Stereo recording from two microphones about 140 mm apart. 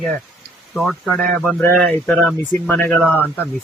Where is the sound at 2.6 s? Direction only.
15° left (ahead or behind).